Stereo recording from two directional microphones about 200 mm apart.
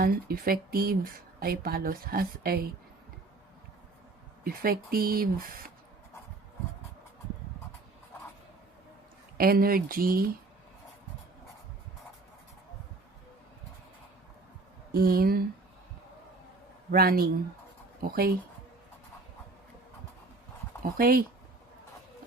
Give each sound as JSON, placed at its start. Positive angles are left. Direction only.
{"t": 0.0, "sound": "speech", "side_deg": -45}
{"t": 4.4, "sound": "speech", "side_deg": -45}
{"t": 9.4, "sound": "speech", "side_deg": -50}
{"t": 14.9, "sound": "speech", "side_deg": -45}
{"t": 16.9, "sound": "speech", "side_deg": -50}
{"t": 21.0, "sound": "speech", "side_deg": -50}